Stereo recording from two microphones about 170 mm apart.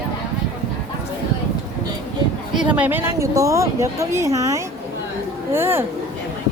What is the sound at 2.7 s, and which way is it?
Speech, 10° right (ahead or behind).